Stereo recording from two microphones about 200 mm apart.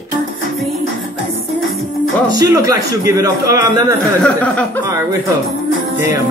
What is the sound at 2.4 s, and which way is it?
A man's voice, 15° right (ahead or behind).